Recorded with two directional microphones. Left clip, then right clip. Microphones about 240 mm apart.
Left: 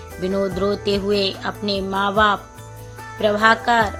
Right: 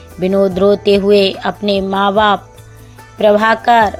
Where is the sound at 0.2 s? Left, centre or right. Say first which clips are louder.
Right 9 dB; right.